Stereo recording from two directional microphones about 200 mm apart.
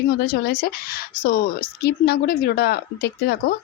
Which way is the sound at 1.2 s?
50° left (ahead or behind).